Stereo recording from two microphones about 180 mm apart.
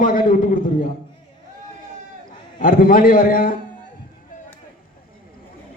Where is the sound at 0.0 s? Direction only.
50° left (ahead or behind).